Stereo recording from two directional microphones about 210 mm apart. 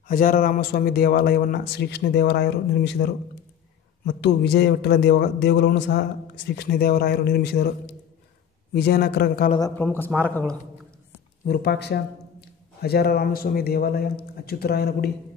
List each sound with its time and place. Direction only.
0.1 s a man's voice: 40° left (ahead or behind)
9.6 s a man's voice: 10° left (ahead or behind)
11.4 s a man's voice: 45° left (ahead or behind)